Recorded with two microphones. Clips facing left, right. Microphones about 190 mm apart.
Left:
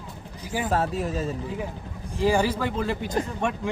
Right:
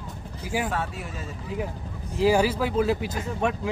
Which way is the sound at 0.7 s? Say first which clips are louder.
Left 6 dB; 40° left (ahead or behind).